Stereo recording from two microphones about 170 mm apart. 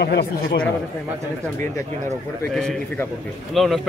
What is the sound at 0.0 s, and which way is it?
Speech, 70° left (ahead or behind).